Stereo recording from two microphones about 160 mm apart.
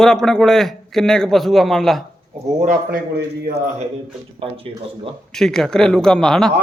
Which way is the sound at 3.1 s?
85° right.